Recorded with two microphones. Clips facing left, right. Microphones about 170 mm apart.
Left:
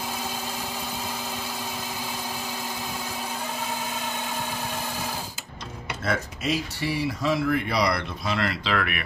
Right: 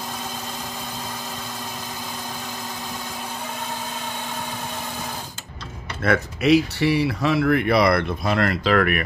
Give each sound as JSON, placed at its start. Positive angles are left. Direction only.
{"t": 6.0, "sound": "speech", "side_deg": -65}